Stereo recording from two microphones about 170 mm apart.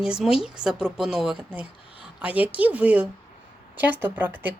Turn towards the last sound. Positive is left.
turn(degrees=-10)  # may be behind; listen again after turning